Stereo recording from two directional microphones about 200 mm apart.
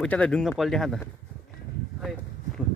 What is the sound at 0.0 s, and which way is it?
Speech, 5° left (ahead or behind).